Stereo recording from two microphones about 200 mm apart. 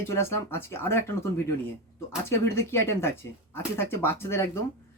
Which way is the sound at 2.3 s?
10° left (ahead or behind).